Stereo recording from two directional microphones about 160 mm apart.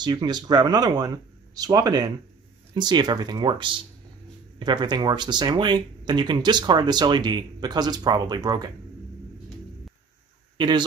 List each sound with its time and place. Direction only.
0.0 s speech: 25° right (ahead or behind)
10.6 s speech: 30° right (ahead or behind)